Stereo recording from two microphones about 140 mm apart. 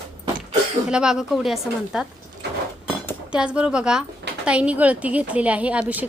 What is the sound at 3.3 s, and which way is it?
A woman's voice, 5° right (ahead or behind).